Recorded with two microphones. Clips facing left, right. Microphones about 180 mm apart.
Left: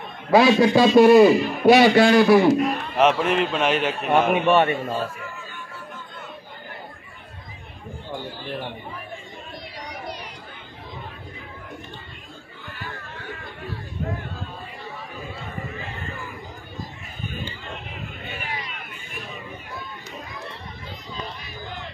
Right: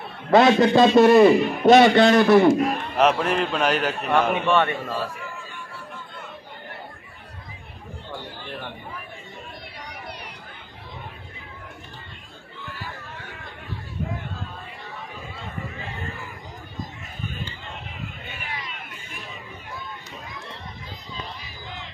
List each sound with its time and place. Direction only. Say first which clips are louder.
0.3 s a man's voice: even; 5° left (ahead or behind)
4.1 s a man's voice: left 3 dB; 15° left (ahead or behind)
4.6 s a man's voice: left 3 dB; 25° left (ahead or behind)
8.1 s speech: left 4 dB; 20° left (ahead or behind)